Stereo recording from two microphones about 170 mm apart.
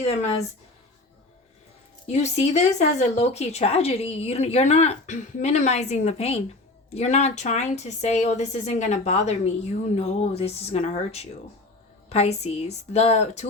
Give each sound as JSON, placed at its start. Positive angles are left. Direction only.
{"t": 0.0, "sound": "speech", "side_deg": 35}
{"t": 2.0, "sound": "speech", "side_deg": 40}